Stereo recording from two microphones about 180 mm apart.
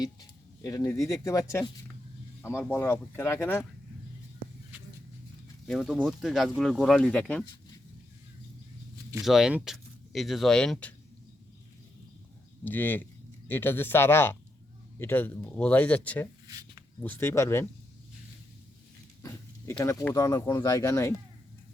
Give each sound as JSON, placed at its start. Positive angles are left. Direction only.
{"t": 0.0, "sound": "speech", "side_deg": 20}
{"t": 5.6, "sound": "speech", "side_deg": 0}
{"t": 9.2, "sound": "speech", "side_deg": 0}
{"t": 12.6, "sound": "speech", "side_deg": 10}
{"t": 19.2, "sound": "speech", "side_deg": 15}